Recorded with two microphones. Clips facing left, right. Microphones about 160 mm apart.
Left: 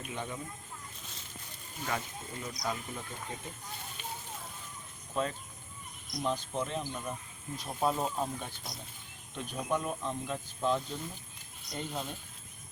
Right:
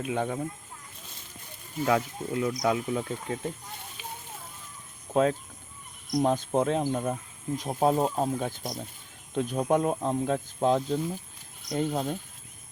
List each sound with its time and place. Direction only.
0.1 s speech: 60° right (ahead or behind)
1.8 s speech: 70° right (ahead or behind)
5.1 s speech: 70° right (ahead or behind)
6.1 s speech: 45° right (ahead or behind)
6.7 s speech: 60° right (ahead or behind)